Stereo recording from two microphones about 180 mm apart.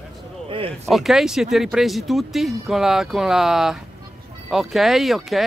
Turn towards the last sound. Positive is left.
turn(degrees=0)  # may be behind; listen again after turning